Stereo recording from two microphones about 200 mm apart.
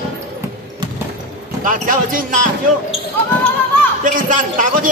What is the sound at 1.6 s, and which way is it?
Speech, 40° right (ahead or behind).